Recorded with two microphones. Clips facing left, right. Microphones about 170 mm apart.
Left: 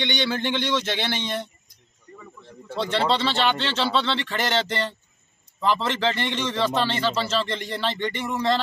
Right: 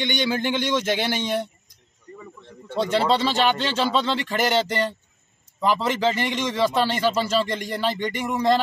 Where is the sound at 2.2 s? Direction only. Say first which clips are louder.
Right 1 dB; 5° left (ahead or behind).